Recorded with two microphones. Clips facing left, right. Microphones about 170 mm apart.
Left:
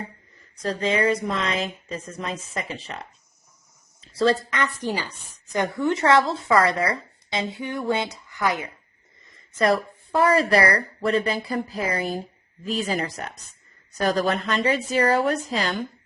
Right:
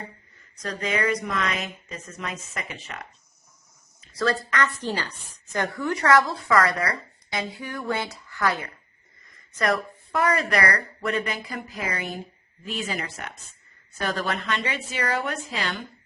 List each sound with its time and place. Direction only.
0.5 s a woman's voice: 30° left (ahead or behind)
9.3 s a woman's voice: 30° left (ahead or behind)